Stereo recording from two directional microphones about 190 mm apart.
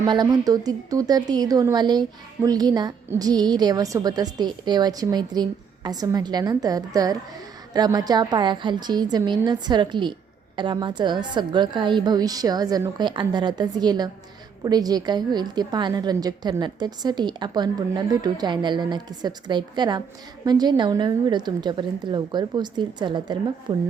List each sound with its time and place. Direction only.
0.0 s a woman's voice: 20° right (ahead or behind)